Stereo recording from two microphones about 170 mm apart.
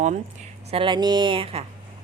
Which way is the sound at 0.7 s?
30° right (ahead or behind).